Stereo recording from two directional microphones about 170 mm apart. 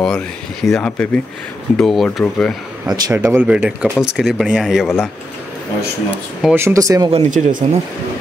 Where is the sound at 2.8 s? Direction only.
20° right (ahead or behind); by 5.0 s centre (ahead or behind).